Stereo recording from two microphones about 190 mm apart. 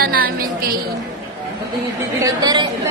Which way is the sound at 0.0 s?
50° right (ahead or behind).